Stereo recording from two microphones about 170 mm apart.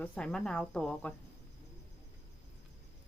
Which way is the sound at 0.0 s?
5° left (ahead or behind).